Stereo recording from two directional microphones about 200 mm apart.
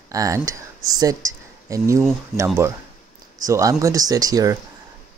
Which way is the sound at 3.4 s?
15° right (ahead or behind).